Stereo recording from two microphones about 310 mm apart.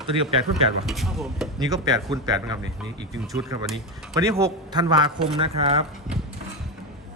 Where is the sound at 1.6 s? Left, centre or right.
Centre.